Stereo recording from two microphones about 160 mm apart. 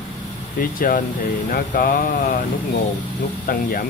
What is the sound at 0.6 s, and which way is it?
Speech, 60° left (ahead or behind).